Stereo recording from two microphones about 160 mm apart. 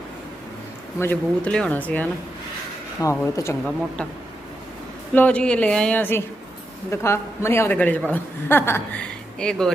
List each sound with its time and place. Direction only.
0.9 s a man's voice: 15° left (ahead or behind)
5.1 s a man's voice: 10° left (ahead or behind)